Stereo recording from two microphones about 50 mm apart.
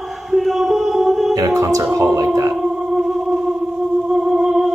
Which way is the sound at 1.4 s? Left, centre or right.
Right.